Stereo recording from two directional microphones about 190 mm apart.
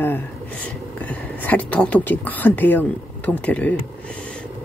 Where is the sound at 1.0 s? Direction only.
10° left (ahead or behind).